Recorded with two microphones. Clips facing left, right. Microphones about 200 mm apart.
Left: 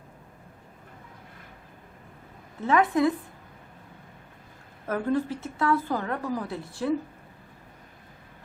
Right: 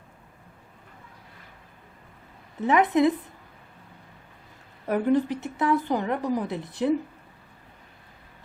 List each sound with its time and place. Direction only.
2.6 s a woman's voice: 20° right (ahead or behind)
4.9 s speech: 15° right (ahead or behind)